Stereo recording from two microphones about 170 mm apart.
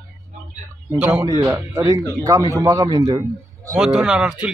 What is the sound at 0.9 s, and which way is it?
A man's voice, 10° right (ahead or behind).